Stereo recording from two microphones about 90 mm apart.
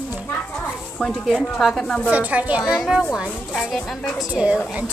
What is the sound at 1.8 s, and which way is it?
Speech, 15° left (ahead or behind).